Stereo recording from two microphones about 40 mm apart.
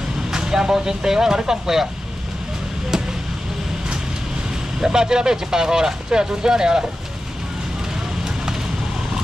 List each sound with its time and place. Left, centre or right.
0.3 s speech: centre
4.7 s speech: centre